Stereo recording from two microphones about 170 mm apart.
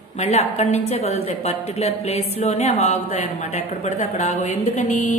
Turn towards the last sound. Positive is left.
turn(degrees=45)  # may be behind; listen again after turning